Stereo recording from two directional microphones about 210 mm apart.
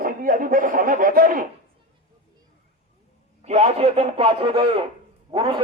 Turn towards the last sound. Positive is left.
turn(degrees=-25)  # may be behind; listen again after turning